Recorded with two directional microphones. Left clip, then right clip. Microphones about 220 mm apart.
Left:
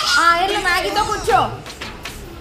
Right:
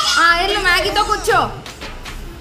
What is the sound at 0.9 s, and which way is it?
Speech, centre (ahead or behind).